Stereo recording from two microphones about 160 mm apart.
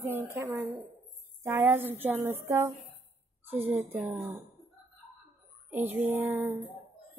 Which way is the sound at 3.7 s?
10° right (ahead or behind).